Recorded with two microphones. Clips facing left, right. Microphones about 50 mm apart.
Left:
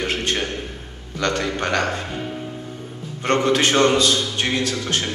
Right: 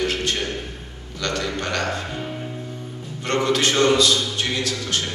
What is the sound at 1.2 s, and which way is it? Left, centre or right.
Speech, left.